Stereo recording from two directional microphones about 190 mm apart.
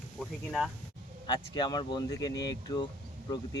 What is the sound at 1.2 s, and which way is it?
Speech, 25° left (ahead or behind).